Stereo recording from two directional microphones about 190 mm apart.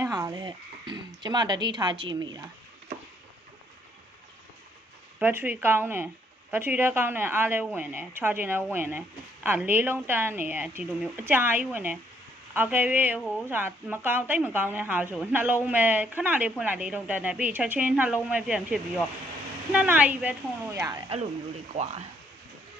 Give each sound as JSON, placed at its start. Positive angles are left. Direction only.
{"t": 0.0, "sound": "speech", "side_deg": -15}
{"t": 5.2, "sound": "a woman's voice", "side_deg": -10}
{"t": 21.7, "sound": "speech", "side_deg": -35}